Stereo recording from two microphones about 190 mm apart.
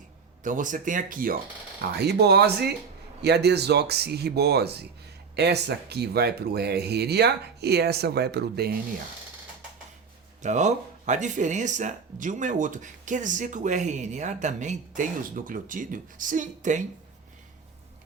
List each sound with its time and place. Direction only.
0.4 s speech: 45° right (ahead or behind)
2.0 s speech: 60° right (ahead or behind)
10.4 s speech: 40° right (ahead or behind)